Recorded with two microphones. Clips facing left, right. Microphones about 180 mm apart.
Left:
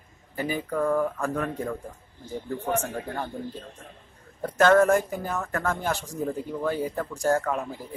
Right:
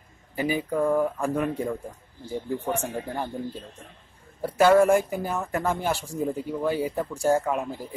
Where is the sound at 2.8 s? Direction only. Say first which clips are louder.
Right 1 dB; 15° right (ahead or behind).